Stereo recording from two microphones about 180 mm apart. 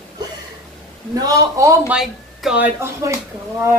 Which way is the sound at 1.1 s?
20° right (ahead or behind).